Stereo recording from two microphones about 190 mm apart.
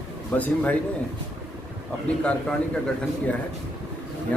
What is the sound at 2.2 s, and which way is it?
Speech, 5° left (ahead or behind).